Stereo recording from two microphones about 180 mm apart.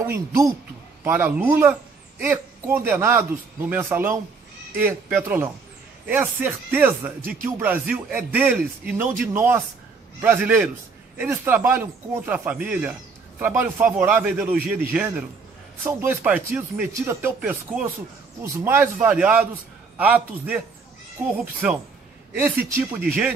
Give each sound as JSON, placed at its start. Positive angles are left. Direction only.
{"t": 0.0, "sound": "speech", "side_deg": -15}
{"t": 22.3, "sound": "speech", "side_deg": -10}